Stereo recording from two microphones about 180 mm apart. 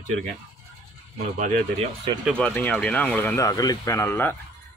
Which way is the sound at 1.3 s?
45° right (ahead or behind).